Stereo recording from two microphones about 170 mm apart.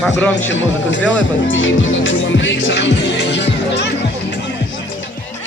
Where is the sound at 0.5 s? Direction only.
90° left.